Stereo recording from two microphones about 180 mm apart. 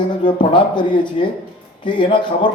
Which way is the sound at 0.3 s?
25° left (ahead or behind).